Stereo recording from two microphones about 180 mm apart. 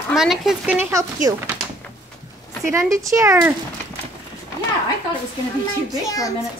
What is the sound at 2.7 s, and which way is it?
Speech, 15° right (ahead or behind).